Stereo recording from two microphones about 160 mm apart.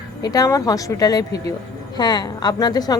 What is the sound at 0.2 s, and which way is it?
A woman's voice, 25° left (ahead or behind).